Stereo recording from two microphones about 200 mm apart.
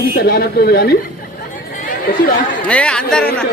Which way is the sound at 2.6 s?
5° left (ahead or behind).